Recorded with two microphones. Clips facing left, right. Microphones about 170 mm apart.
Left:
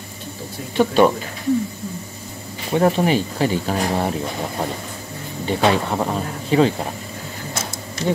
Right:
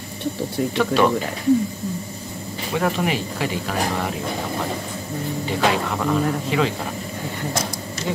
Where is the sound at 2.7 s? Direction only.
35° left (ahead or behind).